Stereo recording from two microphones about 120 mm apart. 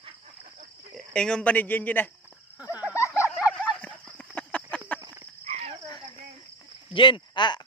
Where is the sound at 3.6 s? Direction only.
10° left (ahead or behind).